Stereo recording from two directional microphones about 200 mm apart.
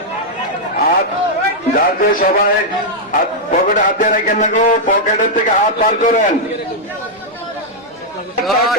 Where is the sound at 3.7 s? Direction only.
40° left (ahead or behind).